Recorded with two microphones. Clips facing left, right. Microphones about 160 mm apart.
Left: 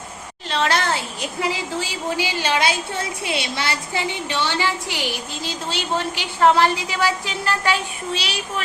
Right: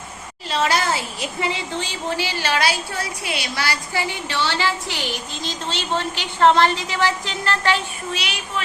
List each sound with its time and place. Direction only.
0.5 s a woman's voice: 5° right (ahead or behind); by 7.8 s 10° left (ahead or behind)
8.1 s speech: 35° left (ahead or behind)